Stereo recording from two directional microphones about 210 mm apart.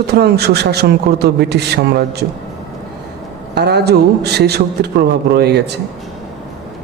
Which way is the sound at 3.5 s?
50° right (ahead or behind).